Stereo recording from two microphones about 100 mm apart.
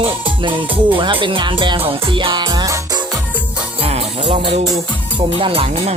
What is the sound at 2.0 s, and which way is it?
Music, 55° right (ahead or behind).